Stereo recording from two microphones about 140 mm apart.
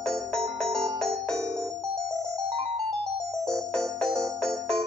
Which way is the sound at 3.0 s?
5° left (ahead or behind).